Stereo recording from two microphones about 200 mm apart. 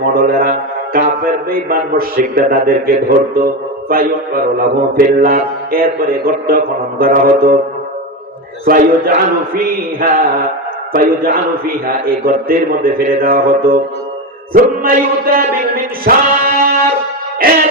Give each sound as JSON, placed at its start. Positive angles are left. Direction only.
{"t": 0.1, "sound": "mantra", "side_deg": -45}
{"t": 3.3, "sound": "speech", "side_deg": -45}
{"t": 4.5, "sound": "mantra", "side_deg": -45}
{"t": 8.6, "sound": "mantra", "side_deg": -45}
{"t": 16.0, "sound": "music", "side_deg": -45}
{"t": 17.4, "sound": "mantra", "side_deg": -45}